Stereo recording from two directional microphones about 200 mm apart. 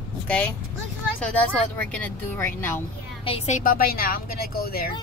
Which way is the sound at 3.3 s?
35° left (ahead or behind).